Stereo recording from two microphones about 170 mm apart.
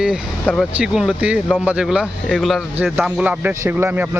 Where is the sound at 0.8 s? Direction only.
5° right (ahead or behind).